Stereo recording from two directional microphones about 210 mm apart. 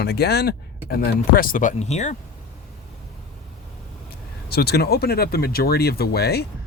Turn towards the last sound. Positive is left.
turn(degrees=50)  # may be behind; listen again after turning